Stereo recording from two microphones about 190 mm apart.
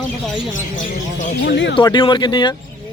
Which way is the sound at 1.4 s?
65° left (ahead or behind).